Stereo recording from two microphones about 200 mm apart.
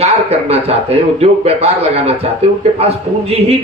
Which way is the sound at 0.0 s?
30° right (ahead or behind).